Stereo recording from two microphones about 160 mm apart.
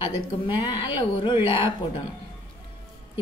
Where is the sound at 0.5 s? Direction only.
30° left (ahead or behind).